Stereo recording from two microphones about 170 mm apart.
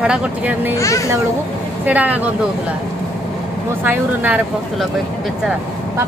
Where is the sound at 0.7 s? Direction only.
20° left (ahead or behind).